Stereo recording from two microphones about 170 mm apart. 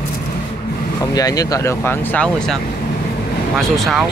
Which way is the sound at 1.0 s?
20° left (ahead or behind).